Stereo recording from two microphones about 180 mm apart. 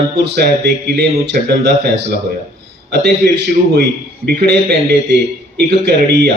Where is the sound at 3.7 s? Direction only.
65° right (ahead or behind).